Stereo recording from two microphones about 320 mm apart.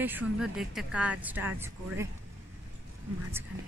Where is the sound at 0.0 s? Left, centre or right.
Centre.